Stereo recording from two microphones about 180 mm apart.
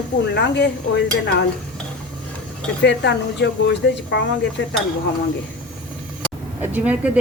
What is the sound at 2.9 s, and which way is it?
Speech, 75° left (ahead or behind).